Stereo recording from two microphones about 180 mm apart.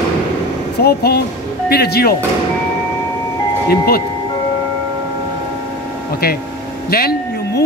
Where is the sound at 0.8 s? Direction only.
60° left (ahead or behind).